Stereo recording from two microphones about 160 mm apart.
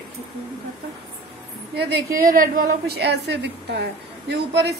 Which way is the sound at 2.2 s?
65° right (ahead or behind).